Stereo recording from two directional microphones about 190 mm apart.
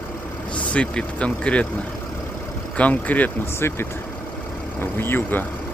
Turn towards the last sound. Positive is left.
turn(degrees=10)  # may be behind; listen again after turning